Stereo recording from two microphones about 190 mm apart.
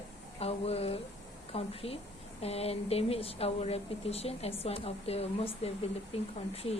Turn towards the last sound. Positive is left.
turn(degrees=30)  # may be behind; listen again after turning